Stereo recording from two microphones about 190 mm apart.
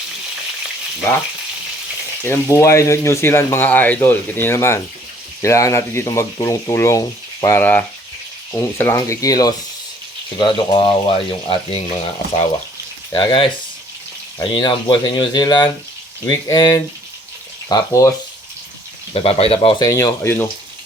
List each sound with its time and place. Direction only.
2.2 s speech: 15° left (ahead or behind)
13.1 s speech: 25° left (ahead or behind)
19.1 s speech: 30° left (ahead or behind)
19.8 s speech: 15° left (ahead or behind)